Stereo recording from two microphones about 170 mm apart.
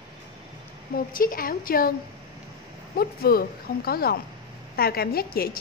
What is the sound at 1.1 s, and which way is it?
Speech, 55° left (ahead or behind).